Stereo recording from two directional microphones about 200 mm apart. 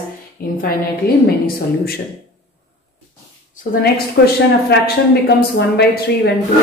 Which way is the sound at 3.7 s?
45° left (ahead or behind).